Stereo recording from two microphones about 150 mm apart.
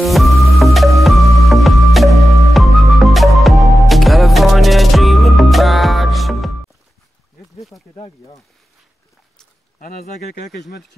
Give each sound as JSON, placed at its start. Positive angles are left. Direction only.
{"t": 0.0, "sound": "music", "side_deg": 0}
{"t": 7.9, "sound": "snake", "side_deg": 25}
{"t": 9.8, "sound": "speech", "side_deg": 65}